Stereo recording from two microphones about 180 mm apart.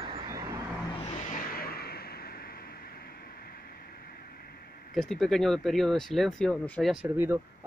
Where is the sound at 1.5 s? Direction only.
60° left (ahead or behind).